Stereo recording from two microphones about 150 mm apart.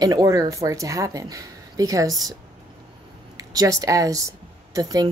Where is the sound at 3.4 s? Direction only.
25° right (ahead or behind).